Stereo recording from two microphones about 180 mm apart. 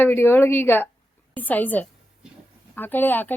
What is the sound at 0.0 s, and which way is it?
Speech, 10° left (ahead or behind).